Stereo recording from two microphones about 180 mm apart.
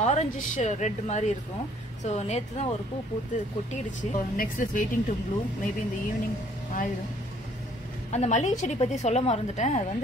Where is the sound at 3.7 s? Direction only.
45° left (ahead or behind).